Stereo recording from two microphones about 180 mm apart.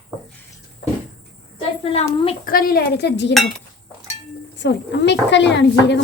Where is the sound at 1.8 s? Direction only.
35° left (ahead or behind).